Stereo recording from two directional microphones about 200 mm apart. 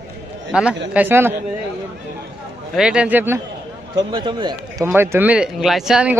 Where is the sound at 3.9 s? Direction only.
25° right (ahead or behind).